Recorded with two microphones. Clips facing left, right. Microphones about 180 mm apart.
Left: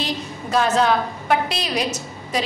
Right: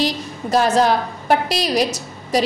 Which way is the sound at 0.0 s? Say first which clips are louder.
Right 5 dB; 35° right (ahead or behind).